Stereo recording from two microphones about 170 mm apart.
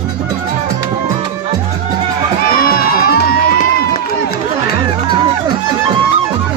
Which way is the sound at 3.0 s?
60° left (ahead or behind).